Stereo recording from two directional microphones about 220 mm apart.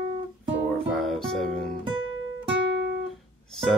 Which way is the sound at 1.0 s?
Centre (ahead or behind).